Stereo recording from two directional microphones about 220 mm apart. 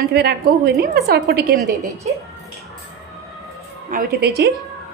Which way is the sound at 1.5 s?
Centre (ahead or behind).